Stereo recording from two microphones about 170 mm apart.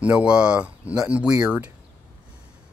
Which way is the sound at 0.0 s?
5° right (ahead or behind).